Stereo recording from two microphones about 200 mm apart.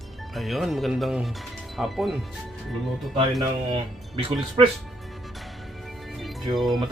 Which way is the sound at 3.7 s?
25° right (ahead or behind).